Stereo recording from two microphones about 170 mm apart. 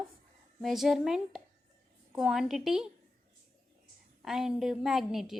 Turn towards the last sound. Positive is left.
turn(degrees=0)  # may be behind; listen again after turning